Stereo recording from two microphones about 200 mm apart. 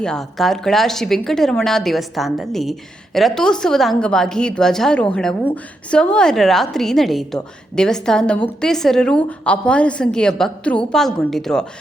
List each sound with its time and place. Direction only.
0.0 s a woman's voice: 5° left (ahead or behind)